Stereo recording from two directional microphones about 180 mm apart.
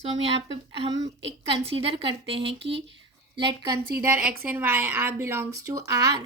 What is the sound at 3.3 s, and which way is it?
Speech, 25° right (ahead or behind).